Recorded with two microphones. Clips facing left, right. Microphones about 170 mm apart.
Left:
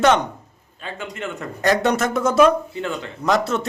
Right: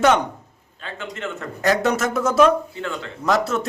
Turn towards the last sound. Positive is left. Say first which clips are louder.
# left 1 dB
turn(degrees=0)  # may be behind; listen again after turning